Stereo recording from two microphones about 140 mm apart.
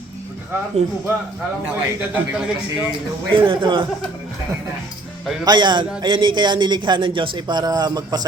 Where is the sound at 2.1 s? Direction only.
10° right (ahead or behind).